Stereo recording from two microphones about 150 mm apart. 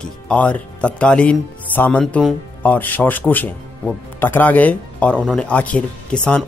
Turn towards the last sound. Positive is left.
turn(degrees=5)  # may be behind; listen again after turning